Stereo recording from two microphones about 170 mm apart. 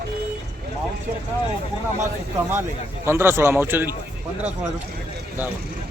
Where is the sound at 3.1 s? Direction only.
15° right (ahead or behind).